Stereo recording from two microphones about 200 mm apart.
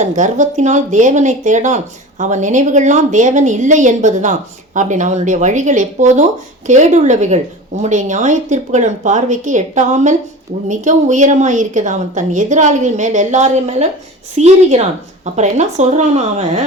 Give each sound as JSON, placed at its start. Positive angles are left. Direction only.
{"t": 0.0, "sound": "speech", "side_deg": -35}